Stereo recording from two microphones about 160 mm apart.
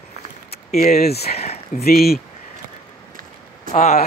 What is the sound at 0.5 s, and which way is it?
Speech, 70° left (ahead or behind).